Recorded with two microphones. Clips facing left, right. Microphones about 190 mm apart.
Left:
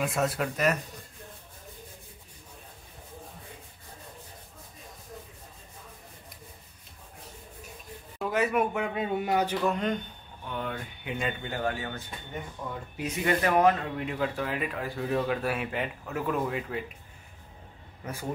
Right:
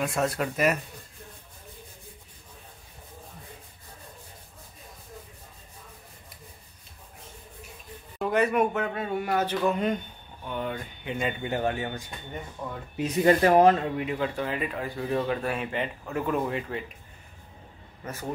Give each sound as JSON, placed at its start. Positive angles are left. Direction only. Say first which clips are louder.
{"t": 0.0, "sound": "speech", "louder": "right 1 dB", "side_deg": 0}
{"t": 8.2, "sound": "a man's voice", "louder": "right 3 dB", "side_deg": 0}
{"t": 8.8, "sound": "speech", "louder": "even", "side_deg": 15}
{"t": 9.7, "sound": "speech", "louder": "right 2 dB", "side_deg": -5}
{"t": 11.4, "sound": "speech", "louder": "right 4 dB", "side_deg": -20}
{"t": 12.6, "sound": "speech", "louder": "right 2 dB", "side_deg": -10}
{"t": 12.9, "sound": "speech", "louder": "right 7 dB", "side_deg": -35}
{"t": 13.9, "sound": "speech", "louder": "right 2 dB", "side_deg": 0}